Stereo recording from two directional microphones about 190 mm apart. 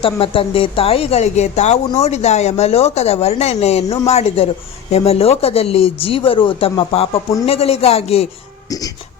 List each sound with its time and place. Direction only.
0.0 s speech: 30° left (ahead or behind)